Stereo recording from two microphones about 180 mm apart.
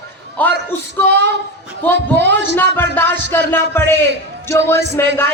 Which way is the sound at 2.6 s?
10° left (ahead or behind).